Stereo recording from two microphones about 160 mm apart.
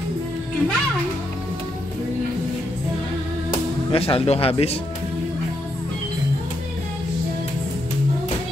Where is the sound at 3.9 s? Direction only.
35° left (ahead or behind).